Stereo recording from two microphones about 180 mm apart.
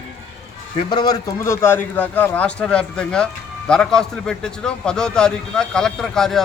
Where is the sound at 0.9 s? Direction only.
20° left (ahead or behind).